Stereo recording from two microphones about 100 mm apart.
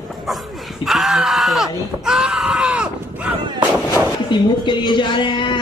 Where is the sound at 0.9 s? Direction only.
Centre (ahead or behind).